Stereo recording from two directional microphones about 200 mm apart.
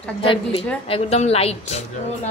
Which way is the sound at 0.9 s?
30° left (ahead or behind).